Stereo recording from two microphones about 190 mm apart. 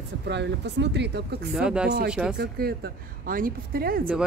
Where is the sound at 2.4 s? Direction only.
55° right (ahead or behind).